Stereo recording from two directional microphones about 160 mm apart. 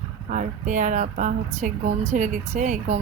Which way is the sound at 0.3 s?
50° right (ahead or behind).